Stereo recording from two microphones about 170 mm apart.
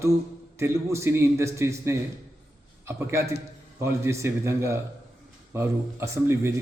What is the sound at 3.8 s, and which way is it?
A man's voice, 15° right (ahead or behind).